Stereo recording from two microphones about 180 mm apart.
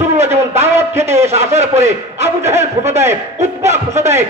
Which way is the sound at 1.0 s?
35° right (ahead or behind).